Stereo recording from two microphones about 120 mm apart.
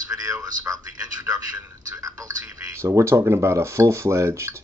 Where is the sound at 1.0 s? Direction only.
30° right (ahead or behind).